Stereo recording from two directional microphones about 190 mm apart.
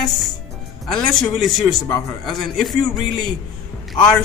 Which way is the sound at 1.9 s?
15° left (ahead or behind).